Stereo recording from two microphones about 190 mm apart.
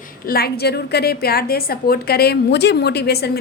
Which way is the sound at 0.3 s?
55° left (ahead or behind).